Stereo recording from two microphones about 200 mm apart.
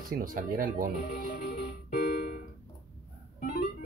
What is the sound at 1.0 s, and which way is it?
Music, 45° left (ahead or behind).